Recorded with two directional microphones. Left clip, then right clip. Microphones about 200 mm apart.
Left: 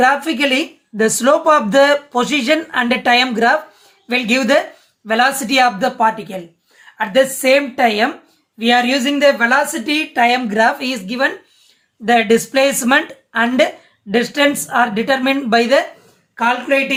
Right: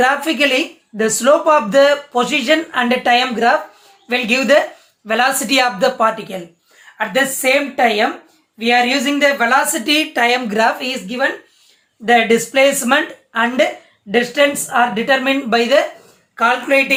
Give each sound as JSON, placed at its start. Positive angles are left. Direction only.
{"t": 0.0, "sound": "speech", "side_deg": 10}
{"t": 10.8, "sound": "speech", "side_deg": 25}
{"t": 16.3, "sound": "speech", "side_deg": 5}